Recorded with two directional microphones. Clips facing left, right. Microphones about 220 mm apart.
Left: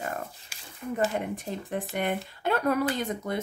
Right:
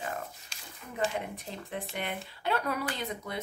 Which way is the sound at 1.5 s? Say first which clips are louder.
Left 6 dB; 50° left (ahead or behind).